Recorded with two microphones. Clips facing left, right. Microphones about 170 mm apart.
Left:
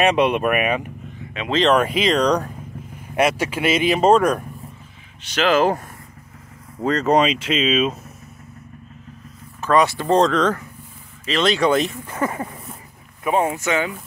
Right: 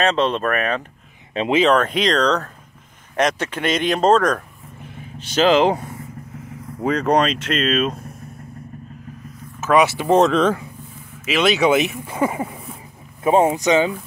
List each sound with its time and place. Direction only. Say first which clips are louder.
0.0 s speech: left 2 dB; 15° left (ahead or behind)
1.3 s speech: right 8 dB; 30° right (ahead or behind)
1.7 s speech: even; 5° left (ahead or behind)
5.3 s speech: right 3 dB; 30° right (ahead or behind)
5.6 s speech: right 1 dB; 15° right (ahead or behind)
6.8 s speech: even; centre (ahead or behind)
9.6 s speech: right 1 dB; 5° right (ahead or behind)
13.2 s speech: right 4 dB; 25° right (ahead or behind)